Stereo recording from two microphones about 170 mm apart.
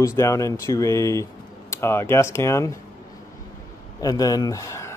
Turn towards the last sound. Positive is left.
turn(degrees=15)  # may be behind; listen again after turning